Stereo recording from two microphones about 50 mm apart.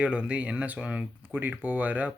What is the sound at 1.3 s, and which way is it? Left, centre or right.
Speech, right.